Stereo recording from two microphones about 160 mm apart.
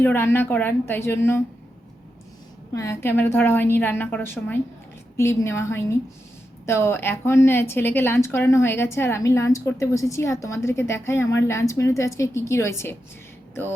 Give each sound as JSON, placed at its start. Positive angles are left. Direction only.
{"t": 0.0, "sound": "a woman's voice", "side_deg": 15}
{"t": 2.7, "sound": "a woman's voice", "side_deg": 15}